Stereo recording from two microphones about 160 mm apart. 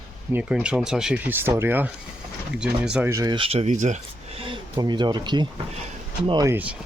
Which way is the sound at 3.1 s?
25° right (ahead or behind).